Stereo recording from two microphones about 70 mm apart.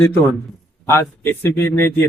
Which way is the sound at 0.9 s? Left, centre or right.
Left.